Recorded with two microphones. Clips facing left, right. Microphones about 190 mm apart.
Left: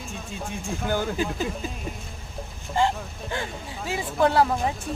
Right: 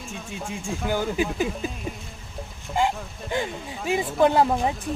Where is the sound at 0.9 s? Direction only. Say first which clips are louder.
Right 1 dB; 10° right (ahead or behind).